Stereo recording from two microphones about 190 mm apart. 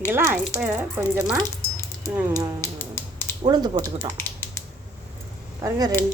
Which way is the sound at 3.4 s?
20° right (ahead or behind).